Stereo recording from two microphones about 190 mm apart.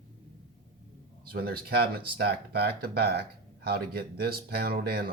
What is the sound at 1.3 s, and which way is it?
Speech, 50° right (ahead or behind).